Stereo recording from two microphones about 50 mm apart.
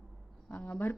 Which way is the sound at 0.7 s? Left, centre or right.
Left.